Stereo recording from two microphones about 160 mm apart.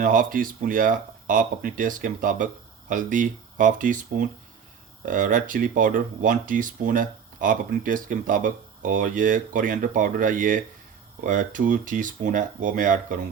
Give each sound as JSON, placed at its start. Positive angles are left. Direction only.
{"t": 0.0, "sound": "speech", "side_deg": -60}